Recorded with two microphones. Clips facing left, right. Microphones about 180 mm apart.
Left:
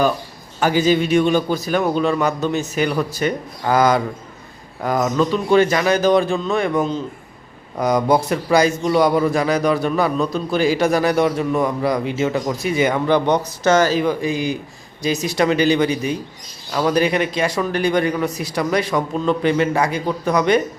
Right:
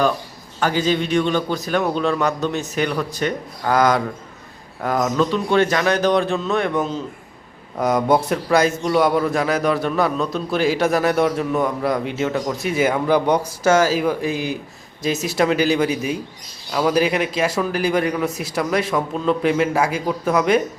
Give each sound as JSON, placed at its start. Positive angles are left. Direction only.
{"t": 0.6, "sound": "a man's voice", "side_deg": 10}